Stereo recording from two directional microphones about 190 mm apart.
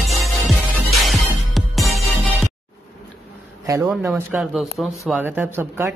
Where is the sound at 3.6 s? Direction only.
15° right (ahead or behind).